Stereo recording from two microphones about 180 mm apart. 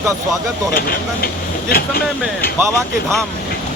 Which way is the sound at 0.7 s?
55° left (ahead or behind).